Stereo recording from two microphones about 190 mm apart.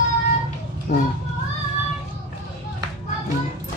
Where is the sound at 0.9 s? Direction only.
40° left (ahead or behind).